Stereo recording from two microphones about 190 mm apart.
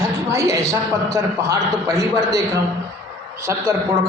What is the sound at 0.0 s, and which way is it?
A man's voice, 15° right (ahead or behind).